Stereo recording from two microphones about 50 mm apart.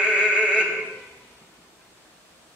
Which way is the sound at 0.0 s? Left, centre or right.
Right.